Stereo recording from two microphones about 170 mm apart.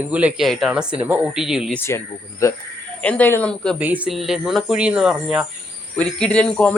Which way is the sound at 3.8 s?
10° right (ahead or behind).